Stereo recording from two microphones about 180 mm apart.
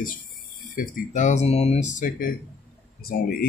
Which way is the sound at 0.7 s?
45° left (ahead or behind).